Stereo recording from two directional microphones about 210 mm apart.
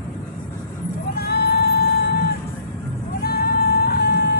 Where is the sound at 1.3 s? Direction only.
50° left (ahead or behind).